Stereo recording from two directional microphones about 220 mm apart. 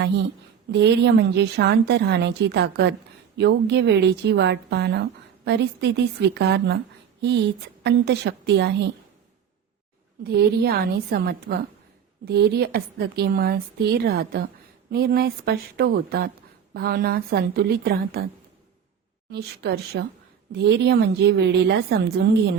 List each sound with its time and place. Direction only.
0.0 s a woman's voice: 50° right (ahead or behind)
10.2 s a woman's voice: 45° right (ahead or behind)
19.3 s a woman's voice: 45° right (ahead or behind)